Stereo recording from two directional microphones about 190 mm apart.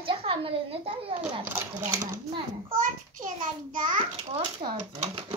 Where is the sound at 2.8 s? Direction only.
45° right (ahead or behind).